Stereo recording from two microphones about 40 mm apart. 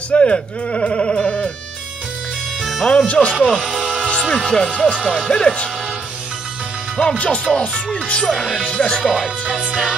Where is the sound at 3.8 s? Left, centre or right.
Centre.